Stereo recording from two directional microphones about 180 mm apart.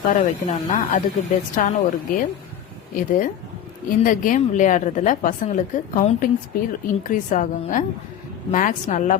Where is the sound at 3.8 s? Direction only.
50° left (ahead or behind).